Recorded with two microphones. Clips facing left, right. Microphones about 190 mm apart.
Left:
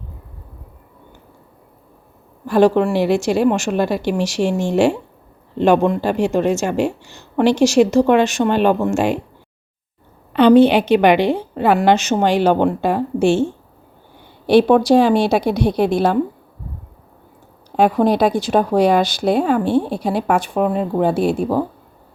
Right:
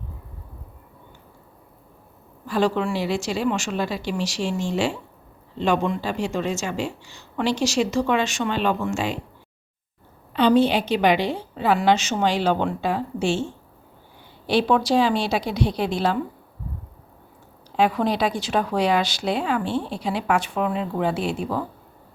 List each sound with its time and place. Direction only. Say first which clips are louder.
2.5 s a woman's voice: left 8 dB; 55° left (ahead or behind)
10.3 s a woman's voice: left 7 dB; 60° left (ahead or behind)
17.7 s speech: left 6 dB; 50° left (ahead or behind)